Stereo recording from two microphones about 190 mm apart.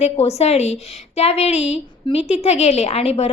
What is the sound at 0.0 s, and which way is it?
A woman's voice, 35° left (ahead or behind).